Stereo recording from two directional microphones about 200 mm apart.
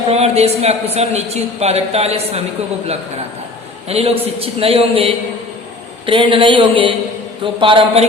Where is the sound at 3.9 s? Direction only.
30° right (ahead or behind).